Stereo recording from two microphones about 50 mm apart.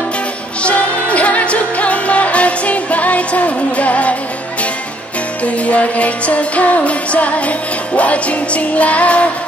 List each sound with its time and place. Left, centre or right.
0.6 s music: left
5.4 s music: left